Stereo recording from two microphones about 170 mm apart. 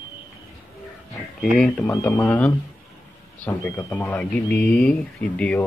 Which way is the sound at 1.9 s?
20° left (ahead or behind).